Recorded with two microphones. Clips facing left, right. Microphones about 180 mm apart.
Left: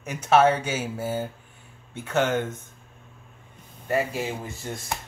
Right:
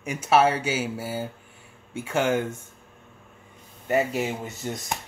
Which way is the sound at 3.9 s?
20° right (ahead or behind).